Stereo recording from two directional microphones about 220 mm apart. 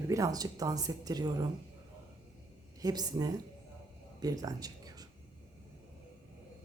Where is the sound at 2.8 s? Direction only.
15° right (ahead or behind).